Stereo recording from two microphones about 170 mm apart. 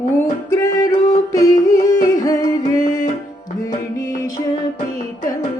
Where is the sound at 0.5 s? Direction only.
20° left (ahead or behind).